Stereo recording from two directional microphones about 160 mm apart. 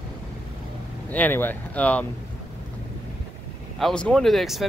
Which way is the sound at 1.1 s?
10° left (ahead or behind).